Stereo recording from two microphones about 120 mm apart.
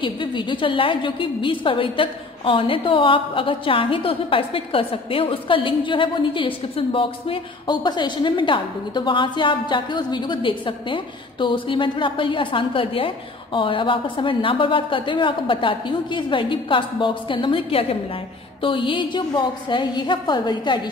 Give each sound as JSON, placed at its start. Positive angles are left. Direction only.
{"t": 0.0, "sound": "a woman's voice", "side_deg": 45}